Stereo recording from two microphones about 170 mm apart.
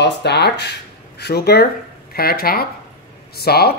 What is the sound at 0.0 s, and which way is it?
Speech, 80° left.